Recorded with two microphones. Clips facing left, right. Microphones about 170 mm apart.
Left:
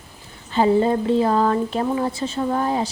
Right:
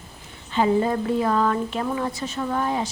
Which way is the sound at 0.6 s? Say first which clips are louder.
Left 3 dB; 30° left (ahead or behind).